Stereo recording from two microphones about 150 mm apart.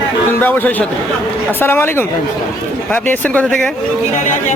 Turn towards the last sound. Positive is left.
turn(degrees=10)  # may be behind; listen again after turning